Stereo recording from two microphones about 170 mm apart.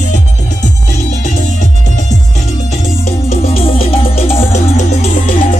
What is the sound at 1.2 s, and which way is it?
Music, 45° left (ahead or behind).